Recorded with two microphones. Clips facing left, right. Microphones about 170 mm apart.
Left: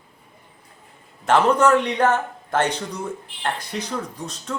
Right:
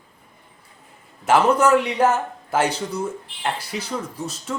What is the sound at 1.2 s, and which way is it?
A man's voice, 10° right (ahead or behind).